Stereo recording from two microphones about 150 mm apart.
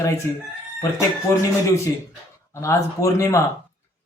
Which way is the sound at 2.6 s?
20° left (ahead or behind).